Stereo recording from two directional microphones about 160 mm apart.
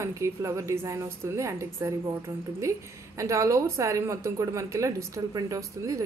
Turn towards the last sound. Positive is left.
turn(degrees=-20)  # may be behind; listen again after turning